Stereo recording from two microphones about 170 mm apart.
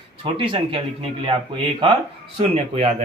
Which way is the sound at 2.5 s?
40° right (ahead or behind).